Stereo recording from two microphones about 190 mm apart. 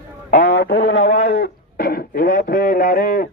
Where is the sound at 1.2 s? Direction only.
55° left (ahead or behind).